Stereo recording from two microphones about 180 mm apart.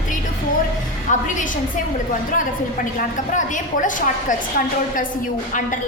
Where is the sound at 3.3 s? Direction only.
45° left (ahead or behind).